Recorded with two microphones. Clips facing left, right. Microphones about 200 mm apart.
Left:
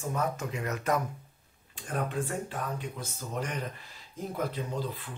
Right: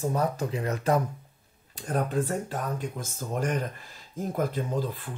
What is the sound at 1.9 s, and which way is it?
Speech, 40° right (ahead or behind).